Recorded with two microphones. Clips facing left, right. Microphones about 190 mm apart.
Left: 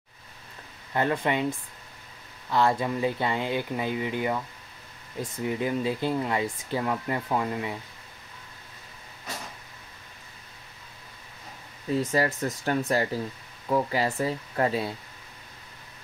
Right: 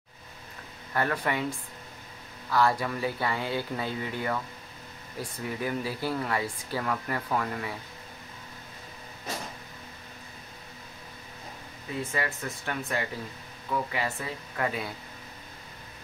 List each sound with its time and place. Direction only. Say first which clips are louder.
0.9 s speech: left 3 dB; 20° left (ahead or behind)
2.5 s speech: left 2 dB; 20° left (ahead or behind)
11.9 s speech: left 7 dB; 40° left (ahead or behind)